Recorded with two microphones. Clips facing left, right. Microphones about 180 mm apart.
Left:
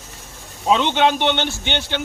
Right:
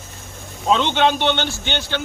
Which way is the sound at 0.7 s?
10° left (ahead or behind).